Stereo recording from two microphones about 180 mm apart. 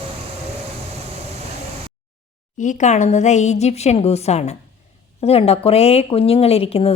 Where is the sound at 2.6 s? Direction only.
45° left (ahead or behind).